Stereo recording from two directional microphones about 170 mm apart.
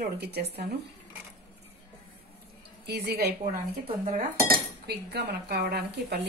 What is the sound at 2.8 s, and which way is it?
Speech, 70° right (ahead or behind).